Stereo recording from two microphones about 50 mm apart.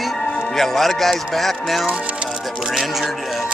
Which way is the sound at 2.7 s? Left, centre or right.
Centre.